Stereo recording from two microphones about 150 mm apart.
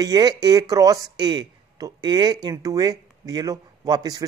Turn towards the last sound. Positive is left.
turn(degrees=-25)  # may be behind; listen again after turning